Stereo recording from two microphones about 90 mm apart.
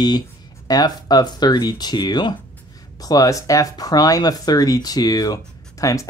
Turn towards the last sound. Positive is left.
turn(degrees=40)  # may be behind; listen again after turning